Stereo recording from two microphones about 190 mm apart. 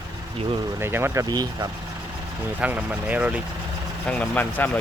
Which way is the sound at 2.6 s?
5° right (ahead or behind).